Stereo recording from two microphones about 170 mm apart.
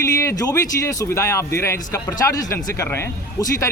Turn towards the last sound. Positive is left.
turn(degrees=15)  # may be behind; listen again after turning